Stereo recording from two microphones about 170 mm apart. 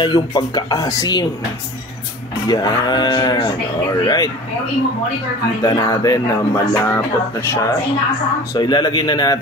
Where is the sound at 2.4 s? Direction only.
25° left (ahead or behind).